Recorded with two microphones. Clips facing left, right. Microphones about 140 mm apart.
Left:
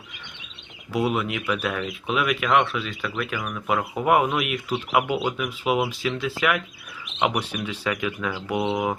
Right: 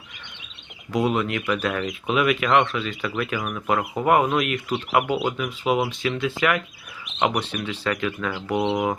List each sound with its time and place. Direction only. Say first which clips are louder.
0.9 s speech: right 2 dB; 5° left (ahead or behind)